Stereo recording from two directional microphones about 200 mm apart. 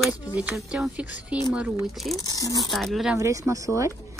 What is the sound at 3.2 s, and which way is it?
Speech, 15° right (ahead or behind).